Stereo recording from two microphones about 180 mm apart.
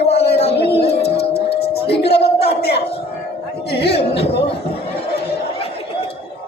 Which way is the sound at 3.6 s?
65° left (ahead or behind).